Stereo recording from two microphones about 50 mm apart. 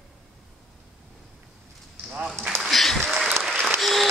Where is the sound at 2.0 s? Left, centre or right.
Centre.